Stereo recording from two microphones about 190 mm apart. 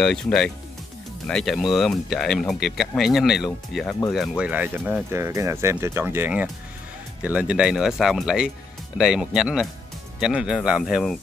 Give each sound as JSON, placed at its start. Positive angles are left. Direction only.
{"t": 0.0, "sound": "speech", "side_deg": 5}